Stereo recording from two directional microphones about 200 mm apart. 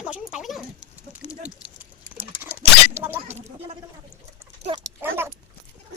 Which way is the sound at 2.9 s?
10° right (ahead or behind).